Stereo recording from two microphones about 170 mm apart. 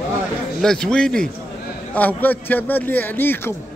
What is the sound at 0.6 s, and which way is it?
Speech, 5° left (ahead or behind).